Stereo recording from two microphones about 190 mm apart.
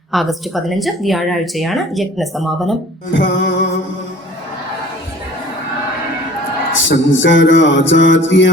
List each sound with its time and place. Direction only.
0.1 s speech: centre (ahead or behind)
3.1 s music: 70° left (ahead or behind)
6.8 s music: 75° left (ahead or behind)